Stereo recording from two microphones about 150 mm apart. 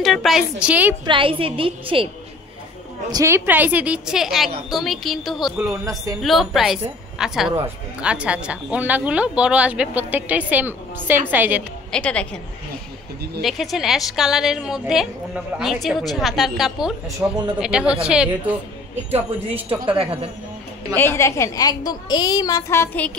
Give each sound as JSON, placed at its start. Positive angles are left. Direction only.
{"t": 0.0, "sound": "a woman's voice", "side_deg": 0}
{"t": 1.0, "sound": "a woman's voice", "side_deg": -35}
{"t": 3.1, "sound": "a woman's voice", "side_deg": -20}
{"t": 11.9, "sound": "a woman's voice", "side_deg": 5}
{"t": 13.4, "sound": "a woman's voice", "side_deg": 0}
{"t": 17.2, "sound": "speech", "side_deg": -15}
{"t": 19.8, "sound": "a woman's voice", "side_deg": -35}
{"t": 20.9, "sound": "a woman's voice", "side_deg": 15}